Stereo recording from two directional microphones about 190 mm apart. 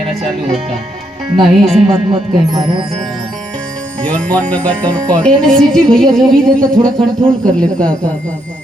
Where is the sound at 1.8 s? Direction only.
25° right (ahead or behind).